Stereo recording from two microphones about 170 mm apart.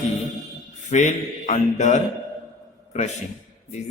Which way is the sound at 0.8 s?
45° left (ahead or behind).